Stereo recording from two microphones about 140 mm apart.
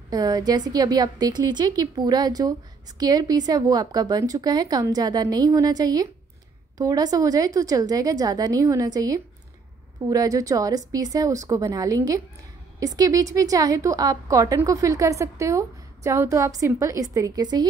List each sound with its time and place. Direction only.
0.1 s a woman's voice: 25° right (ahead or behind)